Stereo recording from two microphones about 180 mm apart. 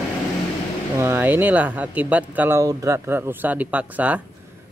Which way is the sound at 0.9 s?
15° right (ahead or behind).